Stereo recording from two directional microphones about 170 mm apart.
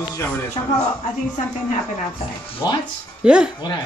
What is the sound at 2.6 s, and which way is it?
Speech, 20° left (ahead or behind).